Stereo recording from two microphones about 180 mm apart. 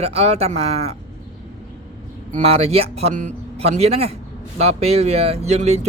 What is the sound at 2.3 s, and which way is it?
Speech, 35° right (ahead or behind).